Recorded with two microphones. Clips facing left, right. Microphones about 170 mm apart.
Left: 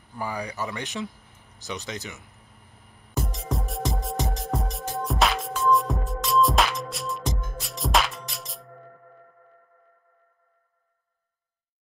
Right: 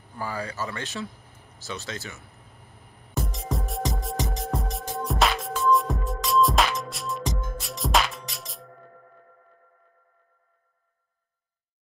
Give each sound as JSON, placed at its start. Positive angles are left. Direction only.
{"t": 0.2, "sound": "speech", "side_deg": 15}
{"t": 3.2, "sound": "music", "side_deg": 0}